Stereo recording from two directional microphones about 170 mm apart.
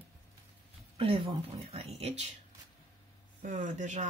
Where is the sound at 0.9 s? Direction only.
35° right (ahead or behind).